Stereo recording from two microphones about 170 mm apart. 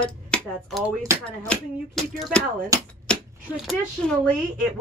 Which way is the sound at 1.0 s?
15° right (ahead or behind).